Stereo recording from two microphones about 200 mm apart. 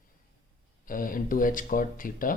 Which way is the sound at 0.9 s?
45° left (ahead or behind).